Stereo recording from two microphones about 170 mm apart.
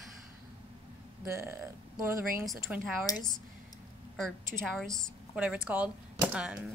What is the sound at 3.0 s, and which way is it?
Speech, 20° left (ahead or behind).